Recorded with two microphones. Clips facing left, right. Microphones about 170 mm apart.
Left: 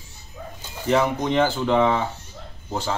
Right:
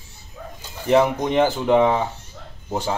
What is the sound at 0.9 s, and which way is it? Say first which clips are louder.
Speech: right 3 dB; 20° right (ahead or behind).